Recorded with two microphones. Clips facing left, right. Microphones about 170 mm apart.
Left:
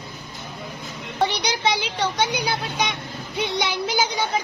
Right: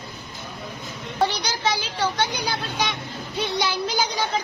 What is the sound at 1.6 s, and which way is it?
A child's voice, 20° left (ahead or behind).